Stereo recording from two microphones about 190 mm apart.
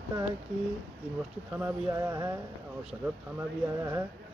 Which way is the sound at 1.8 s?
20° right (ahead or behind).